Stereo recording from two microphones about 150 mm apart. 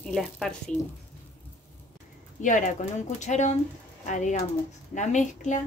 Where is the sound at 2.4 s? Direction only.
55° left (ahead or behind).